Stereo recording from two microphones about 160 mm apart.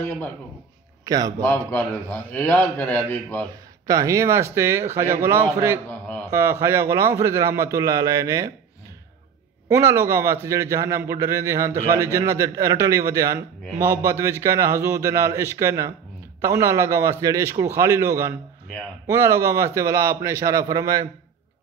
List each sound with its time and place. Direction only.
1.0 s a man's voice: 25° right (ahead or behind)
1.4 s a man's voice: 10° left (ahead or behind)
3.8 s a man's voice: 20° right (ahead or behind)
5.9 s a man's voice: 10° left (ahead or behind)
6.3 s a man's voice: 15° right (ahead or behind)
9.8 s a man's voice: 20° right (ahead or behind)